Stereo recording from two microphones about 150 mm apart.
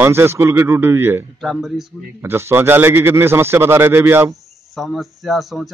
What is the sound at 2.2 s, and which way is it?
Speech, 15° right (ahead or behind).